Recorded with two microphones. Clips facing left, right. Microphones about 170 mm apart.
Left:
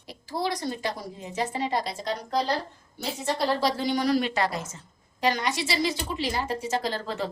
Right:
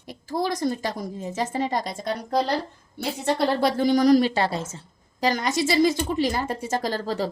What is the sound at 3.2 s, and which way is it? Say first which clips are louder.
A woman's voice: right 4 dB; 55° right (ahead or behind).